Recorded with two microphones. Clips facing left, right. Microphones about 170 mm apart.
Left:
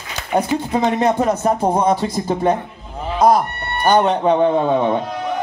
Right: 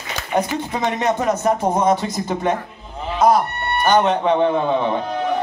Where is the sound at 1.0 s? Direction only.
30° left (ahead or behind).